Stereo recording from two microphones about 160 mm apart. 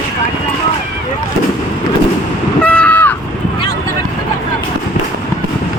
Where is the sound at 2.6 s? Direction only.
10° left (ahead or behind).